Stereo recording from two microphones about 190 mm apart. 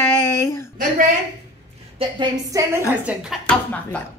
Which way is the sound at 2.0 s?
20° right (ahead or behind).